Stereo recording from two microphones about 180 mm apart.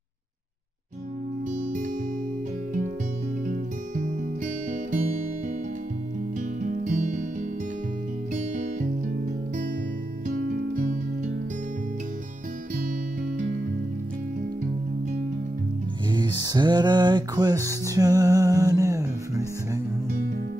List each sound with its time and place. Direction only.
1.5 s music: 45° right (ahead or behind)
3.4 s music: 45° right (ahead or behind)
6.6 s music: 45° right (ahead or behind)
8.3 s music: 45° right (ahead or behind)
16.1 s music: 20° right (ahead or behind)